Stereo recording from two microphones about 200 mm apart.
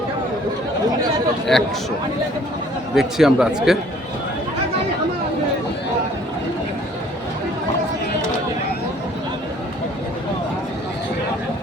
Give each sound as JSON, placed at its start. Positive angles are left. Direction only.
{"t": 1.5, "sound": "speech", "side_deg": 0}
{"t": 2.9, "sound": "speech", "side_deg": 0}